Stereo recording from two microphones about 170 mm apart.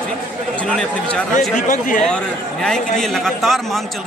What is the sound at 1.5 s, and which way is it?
Speech, 50° left (ahead or behind).